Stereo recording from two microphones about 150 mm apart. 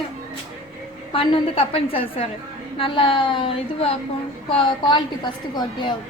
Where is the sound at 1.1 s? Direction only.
35° left (ahead or behind).